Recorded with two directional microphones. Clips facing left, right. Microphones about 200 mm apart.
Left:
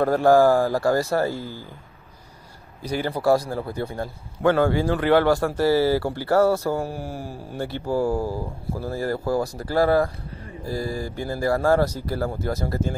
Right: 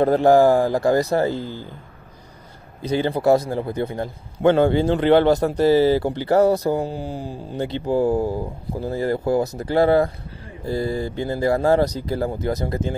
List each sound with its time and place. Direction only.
0.0 s a man's voice: 20° right (ahead or behind)
2.8 s a man's voice: 20° right (ahead or behind)